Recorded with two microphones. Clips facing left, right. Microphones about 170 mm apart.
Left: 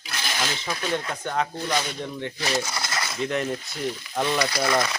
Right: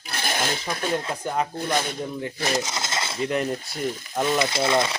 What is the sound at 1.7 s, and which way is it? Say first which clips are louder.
Speech: right 1 dB; 50° right (ahead or behind).